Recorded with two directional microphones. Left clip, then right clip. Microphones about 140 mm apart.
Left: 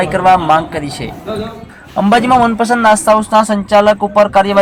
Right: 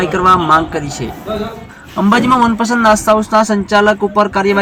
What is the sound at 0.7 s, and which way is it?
Speech, 15° left (ahead or behind).